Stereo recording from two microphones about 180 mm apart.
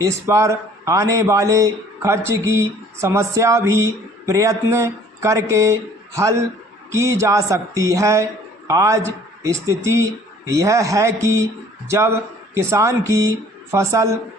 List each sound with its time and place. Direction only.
0.0 s a man's voice: 15° right (ahead or behind)